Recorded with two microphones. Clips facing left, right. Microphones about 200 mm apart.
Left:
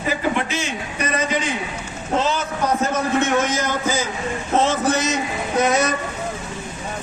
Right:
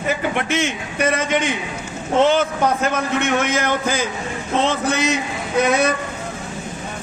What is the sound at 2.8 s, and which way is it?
A man's voice, 60° right (ahead or behind).